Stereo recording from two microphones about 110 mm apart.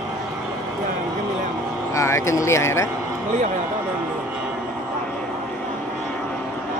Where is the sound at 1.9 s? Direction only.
25° left (ahead or behind).